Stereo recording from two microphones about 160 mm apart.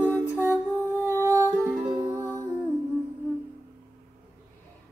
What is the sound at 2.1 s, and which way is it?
Music, 15° right (ahead or behind).